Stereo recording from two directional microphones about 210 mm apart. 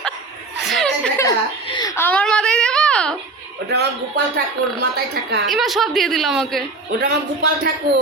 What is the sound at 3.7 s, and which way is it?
Speech, 50° right (ahead or behind).